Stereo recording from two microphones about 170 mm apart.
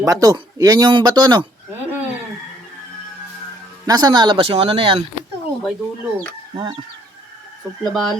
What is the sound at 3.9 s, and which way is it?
Speech, 25° right (ahead or behind).